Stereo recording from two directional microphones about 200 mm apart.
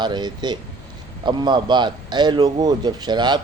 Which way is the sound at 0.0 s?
20° right (ahead or behind).